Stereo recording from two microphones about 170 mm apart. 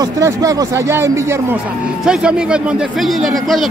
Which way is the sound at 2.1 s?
5° right (ahead or behind).